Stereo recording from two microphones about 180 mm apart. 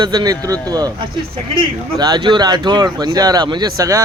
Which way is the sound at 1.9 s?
25° right (ahead or behind).